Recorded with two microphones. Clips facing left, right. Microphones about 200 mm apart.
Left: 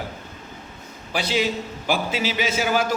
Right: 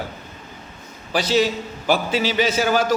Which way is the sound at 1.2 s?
45° right (ahead or behind).